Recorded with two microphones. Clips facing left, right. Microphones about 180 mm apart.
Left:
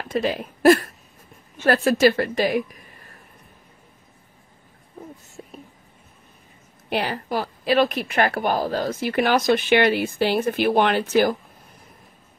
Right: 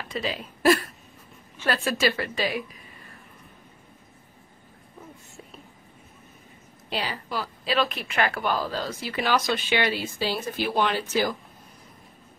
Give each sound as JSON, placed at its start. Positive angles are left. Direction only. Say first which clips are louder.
{"t": 0.1, "sound": "a woman's voice", "louder": "left 8 dB", "side_deg": 50}
{"t": 6.9, "sound": "a woman's voice", "louder": "left 6 dB", "side_deg": 55}